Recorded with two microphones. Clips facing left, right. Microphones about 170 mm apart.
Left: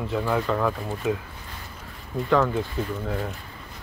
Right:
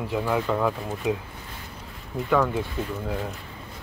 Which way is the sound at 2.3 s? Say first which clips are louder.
Left 1 dB; 5° right (ahead or behind).